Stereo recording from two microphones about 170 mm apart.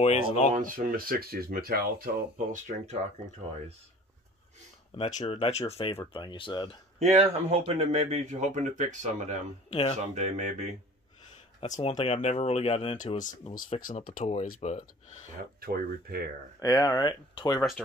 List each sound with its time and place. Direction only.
0.0 s speech: 40° left (ahead or behind)
0.6 s speech: 55° right (ahead or behind)
4.9 s speech: 35° left (ahead or behind)
7.0 s speech: 40° right (ahead or behind)
9.7 s speech: 35° left (ahead or behind)
10.1 s speech: 40° right (ahead or behind)
11.6 s speech: 45° left (ahead or behind)
15.6 s speech: 60° right (ahead or behind)
16.5 s speech: 25° left (ahead or behind)
17.6 s speech: centre (ahead or behind)